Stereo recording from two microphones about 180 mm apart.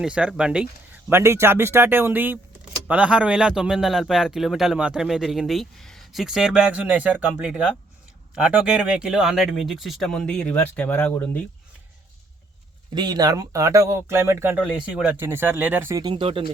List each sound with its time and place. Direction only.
0.0 s speech: 5° right (ahead or behind)
12.9 s speech: 25° right (ahead or behind)